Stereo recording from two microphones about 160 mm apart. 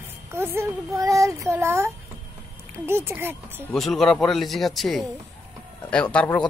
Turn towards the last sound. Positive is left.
turn(degrees=5)  # may be behind; listen again after turning